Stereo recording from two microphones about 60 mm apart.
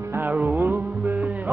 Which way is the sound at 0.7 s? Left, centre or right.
Right.